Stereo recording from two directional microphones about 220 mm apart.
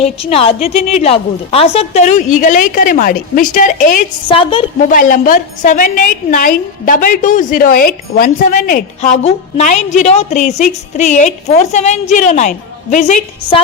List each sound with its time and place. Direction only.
0.0 s a woman's voice: 25° left (ahead or behind)
4.3 s a woman's voice: 25° left (ahead or behind)
4.9 s a woman's voice: 35° left (ahead or behind)